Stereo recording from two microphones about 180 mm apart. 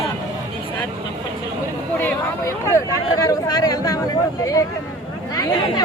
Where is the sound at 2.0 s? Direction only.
15° left (ahead or behind).